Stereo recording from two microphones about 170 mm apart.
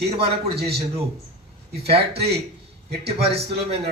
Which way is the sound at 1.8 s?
35° right (ahead or behind).